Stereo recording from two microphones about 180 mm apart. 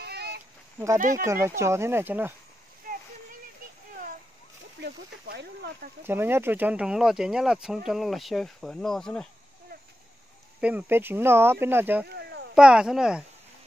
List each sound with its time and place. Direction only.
0.0 s a sound: 65° right (ahead or behind)
0.9 s speech: 50° right (ahead or behind)
1.2 s speech: 15° right (ahead or behind)
4.7 s speech: 65° right (ahead or behind)
6.0 s speech: 10° right (ahead or behind)
10.6 s speech: 10° right (ahead or behind)
12.1 s a sound: 65° right (ahead or behind)
12.5 s speech: 5° right (ahead or behind)